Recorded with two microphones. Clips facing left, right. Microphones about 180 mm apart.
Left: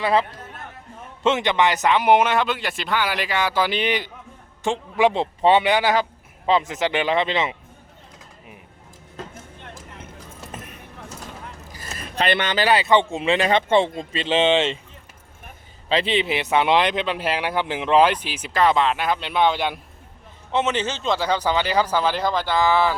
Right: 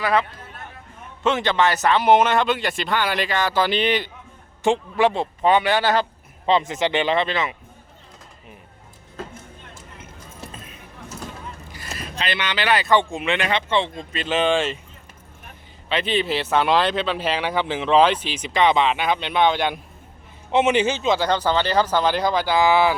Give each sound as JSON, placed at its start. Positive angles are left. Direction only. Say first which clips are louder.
{"t": 0.0, "sound": "speech", "louder": "left 1 dB", "side_deg": 30}
{"t": 11.6, "sound": "a sound", "louder": "even", "side_deg": 40}
{"t": 12.1, "sound": "speech", "louder": "left 5 dB", "side_deg": 55}
{"t": 12.6, "sound": "speech", "louder": "left 1 dB", "side_deg": 25}
{"t": 13.5, "sound": "speech", "louder": "left 4 dB", "side_deg": 50}
{"t": 14.1, "sound": "speech", "louder": "even", "side_deg": 25}
{"t": 15.9, "sound": "speech", "louder": "left 1 dB", "side_deg": 30}
{"t": 16.3, "sound": "speech", "louder": "even", "side_deg": 15}
{"t": 20.5, "sound": "speech", "louder": "right 4 dB", "side_deg": -15}